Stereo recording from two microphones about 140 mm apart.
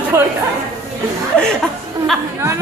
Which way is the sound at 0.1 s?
20° right (ahead or behind).